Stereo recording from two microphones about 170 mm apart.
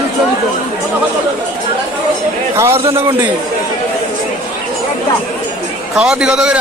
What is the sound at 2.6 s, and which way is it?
Speech, 15° right (ahead or behind).